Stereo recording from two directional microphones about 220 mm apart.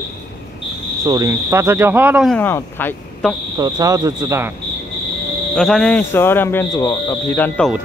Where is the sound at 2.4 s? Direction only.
10° left (ahead or behind).